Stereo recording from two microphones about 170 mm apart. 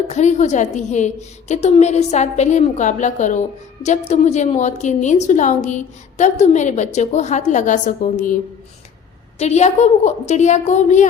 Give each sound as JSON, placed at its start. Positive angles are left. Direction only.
{"t": 0.1, "sound": "a woman's voice", "side_deg": 45}
{"t": 9.4, "sound": "a woman's voice", "side_deg": 40}